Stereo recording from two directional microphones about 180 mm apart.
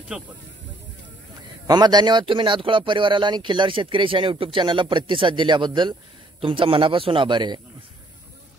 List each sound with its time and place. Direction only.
0.1 s speech: 5° right (ahead or behind)
1.7 s speech: 25° right (ahead or behind)